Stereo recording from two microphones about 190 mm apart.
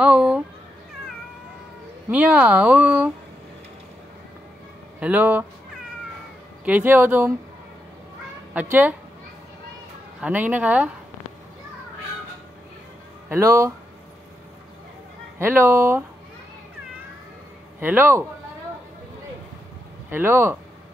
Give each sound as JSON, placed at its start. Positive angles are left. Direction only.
{"t": 0.0, "sound": "speech", "side_deg": -5}
{"t": 2.0, "sound": "speech", "side_deg": -5}
{"t": 5.0, "sound": "speech", "side_deg": -10}
{"t": 6.6, "sound": "speech", "side_deg": -10}
{"t": 8.5, "sound": "speech", "side_deg": -10}
{"t": 10.2, "sound": "speech", "side_deg": -10}
{"t": 13.3, "sound": "speech", "side_deg": -15}
{"t": 15.3, "sound": "speech", "side_deg": -15}
{"t": 17.7, "sound": "speech", "side_deg": -10}
{"t": 20.1, "sound": "speech", "side_deg": -10}